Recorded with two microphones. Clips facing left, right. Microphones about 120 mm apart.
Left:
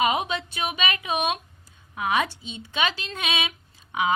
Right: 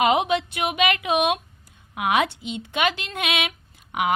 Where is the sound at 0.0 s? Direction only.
70° right (ahead or behind).